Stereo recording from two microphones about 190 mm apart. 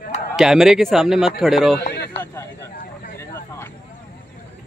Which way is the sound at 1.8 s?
60° left (ahead or behind).